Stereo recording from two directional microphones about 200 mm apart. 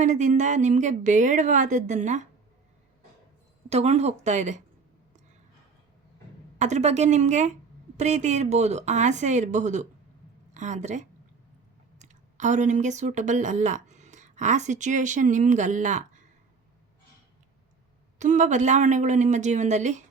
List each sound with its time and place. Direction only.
0.0 s a woman's voice: 35° right (ahead or behind)
3.7 s a woman's voice: 30° right (ahead or behind)
6.6 s a woman's voice: 35° right (ahead or behind)
18.2 s a woman's voice: 35° right (ahead or behind)